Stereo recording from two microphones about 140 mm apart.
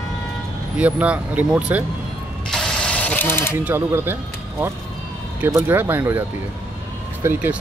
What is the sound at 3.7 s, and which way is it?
Speech, 15° right (ahead or behind).